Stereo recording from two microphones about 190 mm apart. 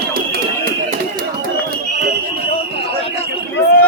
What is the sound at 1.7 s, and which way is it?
Fire alarm, 50° right (ahead or behind).